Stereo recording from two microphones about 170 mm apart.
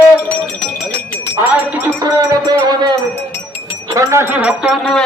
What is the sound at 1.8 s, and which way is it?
Music, 20° right (ahead or behind).